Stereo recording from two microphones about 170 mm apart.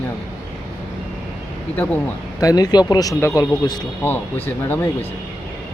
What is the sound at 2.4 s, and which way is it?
Speech, 20° left (ahead or behind).